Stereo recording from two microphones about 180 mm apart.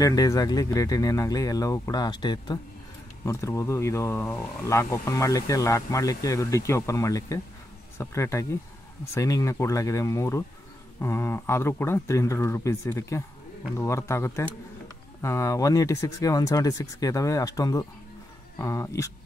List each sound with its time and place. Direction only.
0.0 s speech: 20° left (ahead or behind)